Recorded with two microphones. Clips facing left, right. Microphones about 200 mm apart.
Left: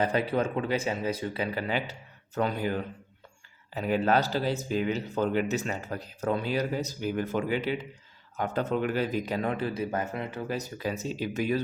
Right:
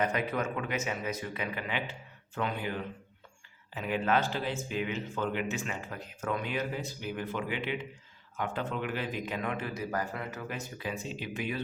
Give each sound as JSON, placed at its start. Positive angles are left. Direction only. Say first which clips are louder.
{"t": 0.0, "sound": "speech", "louder": "left 4 dB", "side_deg": 30}
{"t": 10.5, "sound": "speech", "louder": "left 6 dB", "side_deg": 40}